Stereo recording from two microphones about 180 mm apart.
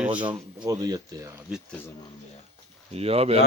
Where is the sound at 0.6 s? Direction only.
20° right (ahead or behind).